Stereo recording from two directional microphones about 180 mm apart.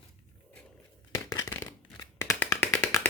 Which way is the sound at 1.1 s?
20° left (ahead or behind).